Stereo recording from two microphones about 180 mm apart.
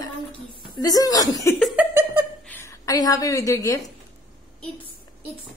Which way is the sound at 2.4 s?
10° left (ahead or behind).